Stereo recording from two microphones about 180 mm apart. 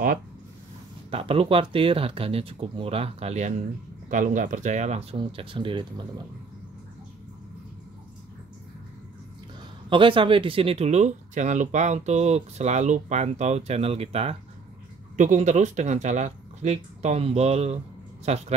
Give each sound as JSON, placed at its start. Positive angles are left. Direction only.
{"t": 1.1, "sound": "speech", "side_deg": -30}
{"t": 9.8, "sound": "speech", "side_deg": -30}